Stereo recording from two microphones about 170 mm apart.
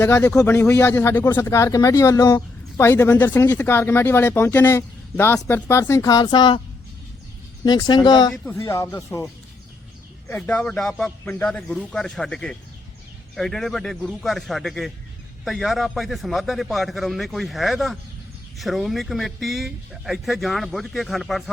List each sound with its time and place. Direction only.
0.0 s speech: 15° left (ahead or behind)
7.6 s speech: 25° left (ahead or behind)
8.3 s speech: 10° left (ahead or behind)
10.2 s a man's voice: 10° left (ahead or behind)